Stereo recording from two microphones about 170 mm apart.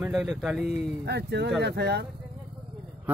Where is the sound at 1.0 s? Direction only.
75° right (ahead or behind).